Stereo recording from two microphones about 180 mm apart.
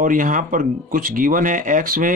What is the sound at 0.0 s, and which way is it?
Speech, 50° right (ahead or behind).